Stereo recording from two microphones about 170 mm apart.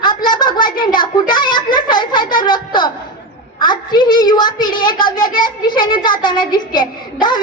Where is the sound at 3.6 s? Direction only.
25° left (ahead or behind).